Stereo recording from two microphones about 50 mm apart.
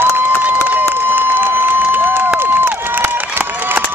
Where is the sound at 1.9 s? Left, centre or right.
Right.